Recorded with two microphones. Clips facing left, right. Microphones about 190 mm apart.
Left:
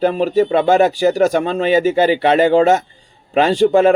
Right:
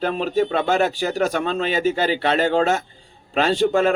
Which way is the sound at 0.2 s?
45° left (ahead or behind).